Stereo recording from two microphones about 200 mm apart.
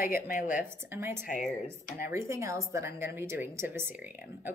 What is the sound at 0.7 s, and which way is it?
Speech, 10° right (ahead or behind).